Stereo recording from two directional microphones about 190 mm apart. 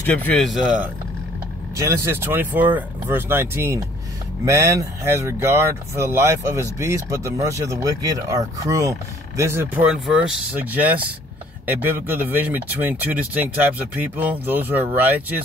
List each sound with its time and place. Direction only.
0.0 s speech: 10° left (ahead or behind); by 15.4 s 10° right (ahead or behind)